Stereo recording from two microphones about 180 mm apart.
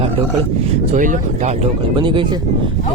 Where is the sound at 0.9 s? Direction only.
45° right (ahead or behind).